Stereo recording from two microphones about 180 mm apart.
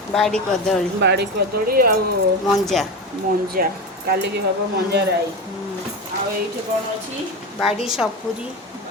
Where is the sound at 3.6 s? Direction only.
50° right (ahead or behind).